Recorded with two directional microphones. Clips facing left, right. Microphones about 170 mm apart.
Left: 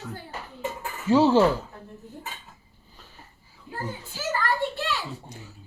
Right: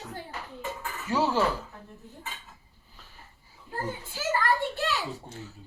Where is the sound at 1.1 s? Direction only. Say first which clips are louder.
Left 8 dB; 25° left (ahead or behind).